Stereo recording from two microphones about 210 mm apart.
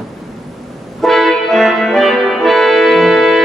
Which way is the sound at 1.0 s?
Centre (ahead or behind).